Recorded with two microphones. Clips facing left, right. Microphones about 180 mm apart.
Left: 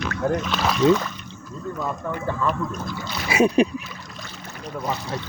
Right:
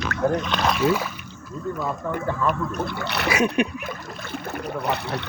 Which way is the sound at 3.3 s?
30° left (ahead or behind).